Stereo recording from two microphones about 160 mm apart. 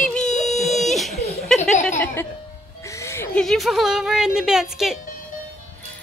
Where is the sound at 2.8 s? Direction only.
20° left (ahead or behind).